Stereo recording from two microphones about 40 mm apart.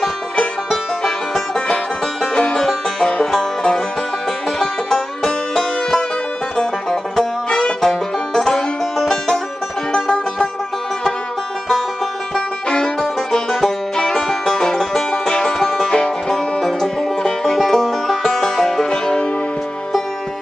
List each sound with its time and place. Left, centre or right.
0.7 s music: centre
4.6 s music: centre; by 7.7 s left
7.8 s music: centre
12.4 s music: left
13.3 s music: centre
18.9 s music: left